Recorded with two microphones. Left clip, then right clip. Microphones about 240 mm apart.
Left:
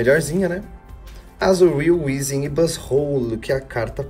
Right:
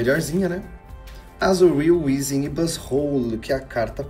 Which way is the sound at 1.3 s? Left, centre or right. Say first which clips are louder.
Left 2 dB; centre.